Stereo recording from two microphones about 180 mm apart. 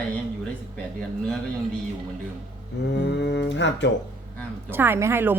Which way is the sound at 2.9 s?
70° left (ahead or behind).